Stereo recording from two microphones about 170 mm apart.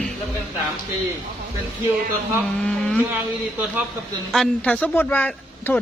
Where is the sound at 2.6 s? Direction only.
5° left (ahead or behind).